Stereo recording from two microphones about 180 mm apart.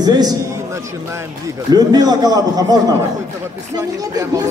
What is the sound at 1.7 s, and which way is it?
Speech, 20° right (ahead or behind).